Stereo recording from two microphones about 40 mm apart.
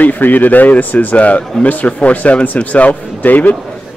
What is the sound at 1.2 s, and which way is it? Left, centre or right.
A man's voice, left.